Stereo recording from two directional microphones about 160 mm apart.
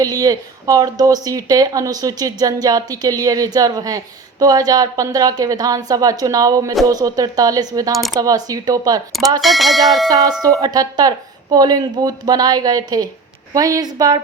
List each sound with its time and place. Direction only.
0.0 s speech: 20° right (ahead or behind)
9.4 s speech: centre (ahead or behind)
10.4 s speech: 25° right (ahead or behind)